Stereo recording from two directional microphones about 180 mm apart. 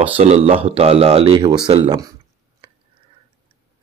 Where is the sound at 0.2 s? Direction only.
40° right (ahead or behind); by 2.1 s 20° right (ahead or behind).